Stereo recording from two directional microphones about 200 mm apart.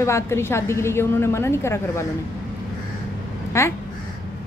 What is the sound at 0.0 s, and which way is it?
A woman's voice, 15° left (ahead or behind).